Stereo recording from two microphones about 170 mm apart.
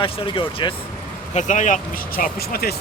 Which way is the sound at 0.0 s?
30° left (ahead or behind).